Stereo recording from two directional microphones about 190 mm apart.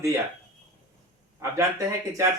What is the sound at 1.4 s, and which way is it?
Speech, 15° right (ahead or behind).